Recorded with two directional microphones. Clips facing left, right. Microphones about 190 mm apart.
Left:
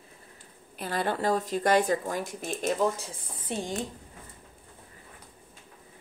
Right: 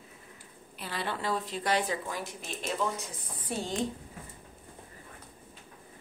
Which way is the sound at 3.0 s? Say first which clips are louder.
Even; 25° left (ahead or behind).